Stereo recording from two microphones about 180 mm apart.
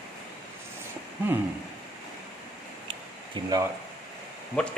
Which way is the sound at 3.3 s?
20° right (ahead or behind).